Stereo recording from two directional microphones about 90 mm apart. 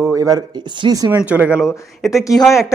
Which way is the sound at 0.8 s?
50° right (ahead or behind).